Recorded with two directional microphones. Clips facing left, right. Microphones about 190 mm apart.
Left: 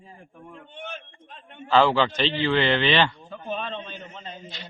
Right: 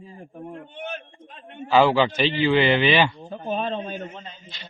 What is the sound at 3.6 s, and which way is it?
Speech, 45° right (ahead or behind).